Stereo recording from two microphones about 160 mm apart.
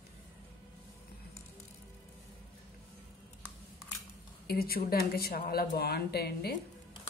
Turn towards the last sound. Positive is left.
turn(degrees=85)